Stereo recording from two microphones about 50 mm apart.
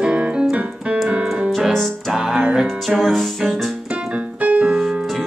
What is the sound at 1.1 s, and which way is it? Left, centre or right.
Piano, right.